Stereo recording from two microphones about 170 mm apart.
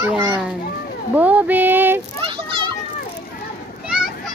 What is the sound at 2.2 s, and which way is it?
Children playing, 30° right (ahead or behind).